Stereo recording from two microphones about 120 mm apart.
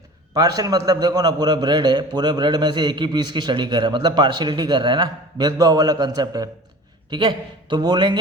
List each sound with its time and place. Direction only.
0.3 s a man's voice: 35° right (ahead or behind)
7.1 s a man's voice: 40° right (ahead or behind)